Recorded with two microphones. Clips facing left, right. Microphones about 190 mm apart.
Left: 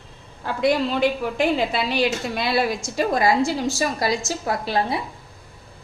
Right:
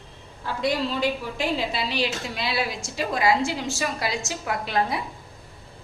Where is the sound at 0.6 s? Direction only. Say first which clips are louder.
Left 5 dB; 60° left (ahead or behind); by 5.0 s 35° left (ahead or behind).